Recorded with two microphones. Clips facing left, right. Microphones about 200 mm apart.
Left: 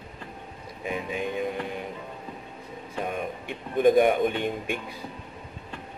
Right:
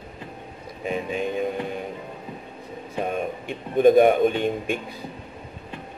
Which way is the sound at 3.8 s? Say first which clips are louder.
Right 4 dB; 25° right (ahead or behind).